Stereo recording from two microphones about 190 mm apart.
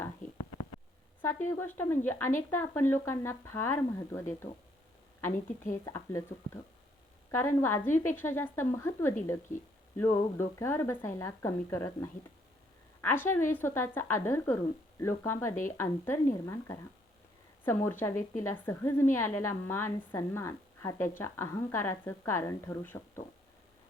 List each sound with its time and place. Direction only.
1.2 s a woman's voice: 10° left (ahead or behind)
5.7 s a woman's voice: 15° left (ahead or behind)